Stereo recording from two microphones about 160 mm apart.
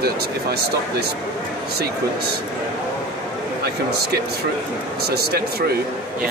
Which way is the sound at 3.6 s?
80° right.